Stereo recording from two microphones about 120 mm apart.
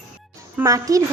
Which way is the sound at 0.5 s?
25° right (ahead or behind).